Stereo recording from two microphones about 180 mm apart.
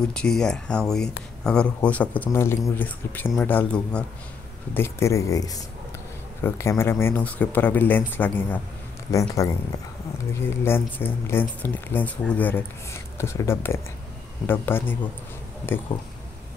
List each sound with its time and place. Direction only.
0.0 s speech: 5° left (ahead or behind)